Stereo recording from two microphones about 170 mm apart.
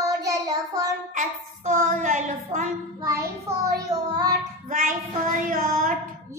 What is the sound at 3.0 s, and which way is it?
Child singing, 15° right (ahead or behind).